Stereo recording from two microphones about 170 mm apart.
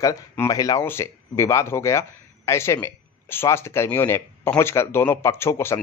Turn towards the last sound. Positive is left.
turn(degrees=15)  # may be behind; listen again after turning